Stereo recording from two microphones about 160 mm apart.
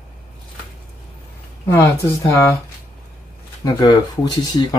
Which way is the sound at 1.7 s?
20° left (ahead or behind).